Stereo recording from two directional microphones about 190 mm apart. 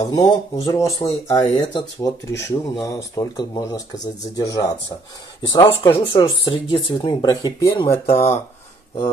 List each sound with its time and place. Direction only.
0.0 s speech: 20° left (ahead or behind)
8.1 s speech: 35° left (ahead or behind)